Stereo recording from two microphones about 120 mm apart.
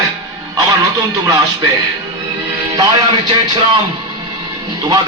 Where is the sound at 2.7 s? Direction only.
35° right (ahead or behind).